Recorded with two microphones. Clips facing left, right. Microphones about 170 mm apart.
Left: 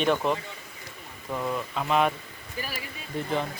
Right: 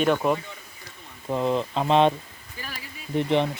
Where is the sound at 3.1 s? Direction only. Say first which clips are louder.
Right 7 dB; 20° right (ahead or behind).